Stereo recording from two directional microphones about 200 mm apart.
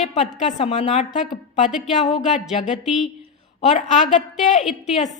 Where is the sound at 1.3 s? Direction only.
Centre (ahead or behind).